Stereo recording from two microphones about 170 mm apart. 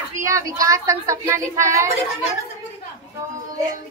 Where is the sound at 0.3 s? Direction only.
20° right (ahead or behind).